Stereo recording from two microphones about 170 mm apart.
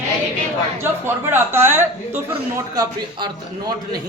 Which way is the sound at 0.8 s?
15° right (ahead or behind).